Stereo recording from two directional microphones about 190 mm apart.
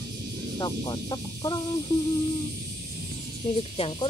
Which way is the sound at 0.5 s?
20° left (ahead or behind).